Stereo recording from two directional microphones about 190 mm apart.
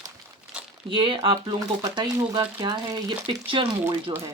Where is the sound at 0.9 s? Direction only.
25° right (ahead or behind).